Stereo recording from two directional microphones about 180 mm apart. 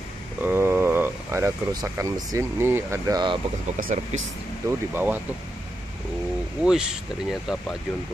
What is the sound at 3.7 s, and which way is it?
Speech, 45° right (ahead or behind).